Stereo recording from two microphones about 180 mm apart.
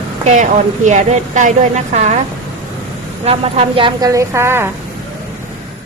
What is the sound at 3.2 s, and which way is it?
A woman's voice, 35° right (ahead or behind).